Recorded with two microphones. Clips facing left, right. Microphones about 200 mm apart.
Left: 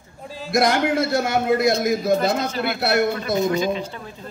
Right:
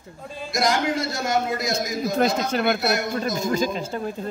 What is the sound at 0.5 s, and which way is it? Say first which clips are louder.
A man's voice: left 4 dB; 60° left (ahead or behind).